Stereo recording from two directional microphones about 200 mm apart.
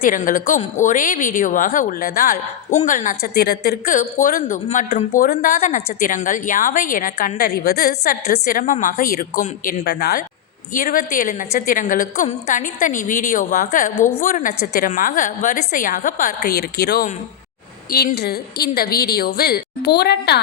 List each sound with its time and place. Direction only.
0.0 s a woman's voice: 40° left (ahead or behind)